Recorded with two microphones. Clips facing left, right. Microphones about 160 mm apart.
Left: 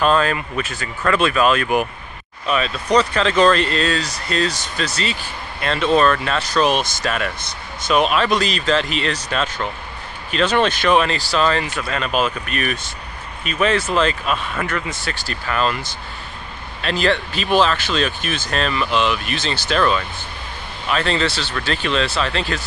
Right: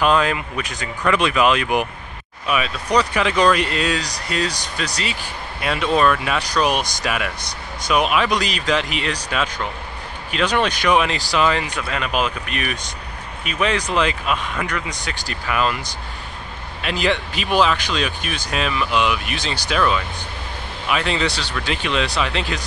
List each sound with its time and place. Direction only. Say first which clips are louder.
0.0 s speech: left 1 dB; 15° right (ahead or behind)